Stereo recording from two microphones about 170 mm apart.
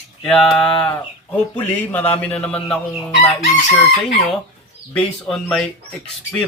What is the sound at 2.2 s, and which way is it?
Speech, 5° left (ahead or behind).